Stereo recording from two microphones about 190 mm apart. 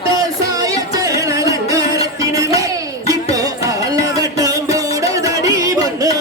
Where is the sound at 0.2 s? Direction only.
20° right (ahead or behind).